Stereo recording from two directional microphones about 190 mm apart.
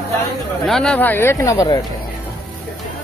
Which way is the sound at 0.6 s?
Centre (ahead or behind).